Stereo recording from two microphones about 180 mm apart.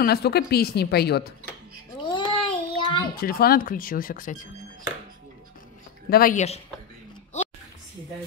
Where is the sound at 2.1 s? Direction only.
25° left (ahead or behind).